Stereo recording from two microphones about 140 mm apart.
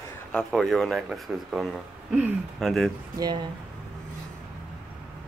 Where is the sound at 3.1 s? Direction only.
30° right (ahead or behind).